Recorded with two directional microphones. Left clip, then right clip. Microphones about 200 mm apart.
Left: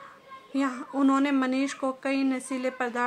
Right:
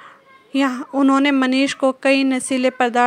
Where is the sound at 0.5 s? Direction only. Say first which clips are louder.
Right 9 dB; 30° right (ahead or behind).